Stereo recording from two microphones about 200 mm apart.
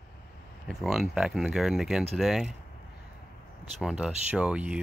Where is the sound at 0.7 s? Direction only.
Centre (ahead or behind).